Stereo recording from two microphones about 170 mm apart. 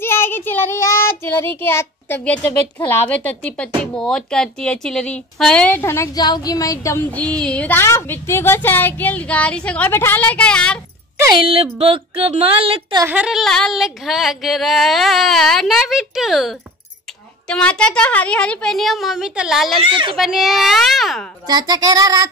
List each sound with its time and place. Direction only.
0.0 s child singing: 15° left (ahead or behind)
1.2 s a child's voice: 15° left (ahead or behind)
11.3 s speech: 35° right (ahead or behind)
13.0 s a sound: 5° right (ahead or behind)
19.8 s speech: 30° right (ahead or behind)
20.2 s a sound: centre (ahead or behind)
21.5 s child singing: 25° right (ahead or behind)